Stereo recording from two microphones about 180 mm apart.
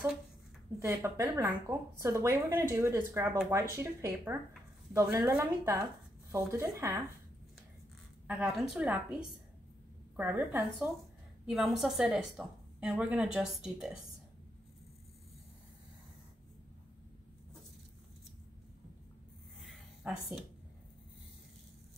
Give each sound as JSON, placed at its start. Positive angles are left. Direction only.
{"t": 0.7, "sound": "a woman's voice", "side_deg": -15}
{"t": 8.3, "sound": "a woman's voice", "side_deg": -5}
{"t": 10.1, "sound": "a woman's voice", "side_deg": -10}
{"t": 19.6, "sound": "a sound", "side_deg": 0}